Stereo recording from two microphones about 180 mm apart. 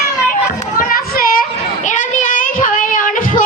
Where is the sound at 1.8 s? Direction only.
45° left (ahead or behind).